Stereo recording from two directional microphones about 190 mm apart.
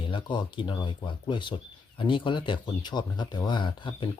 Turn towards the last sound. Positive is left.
turn(degrees=25)  # may be behind; listen again after turning